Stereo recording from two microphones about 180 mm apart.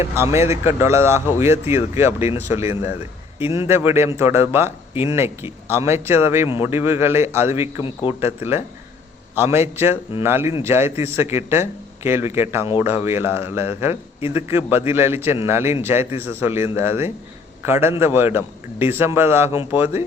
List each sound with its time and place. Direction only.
0.3 s speech: 15° right (ahead or behind)